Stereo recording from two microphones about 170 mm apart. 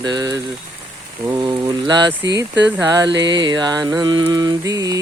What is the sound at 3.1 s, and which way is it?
Music, 90° right.